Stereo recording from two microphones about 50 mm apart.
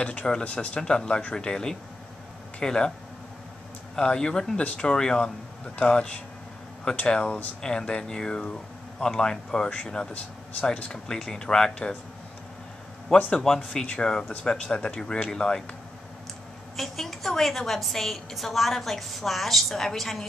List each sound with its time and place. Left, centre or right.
0.0 s speech: left
3.9 s speech: centre
13.3 s speech: centre
16.7 s a woman's voice: centre